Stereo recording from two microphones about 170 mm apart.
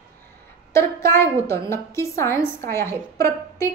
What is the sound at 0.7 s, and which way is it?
A woman's voice, 15° left (ahead or behind).